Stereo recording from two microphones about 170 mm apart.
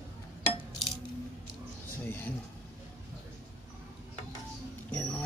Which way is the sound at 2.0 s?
15° left (ahead or behind).